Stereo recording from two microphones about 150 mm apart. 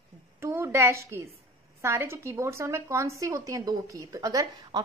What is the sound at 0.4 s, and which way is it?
A woman's voice, 20° right (ahead or behind).